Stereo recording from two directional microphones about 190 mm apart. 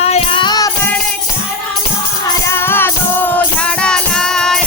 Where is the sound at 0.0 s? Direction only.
30° left (ahead or behind).